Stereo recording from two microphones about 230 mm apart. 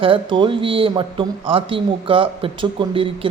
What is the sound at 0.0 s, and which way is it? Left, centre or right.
Speech, right.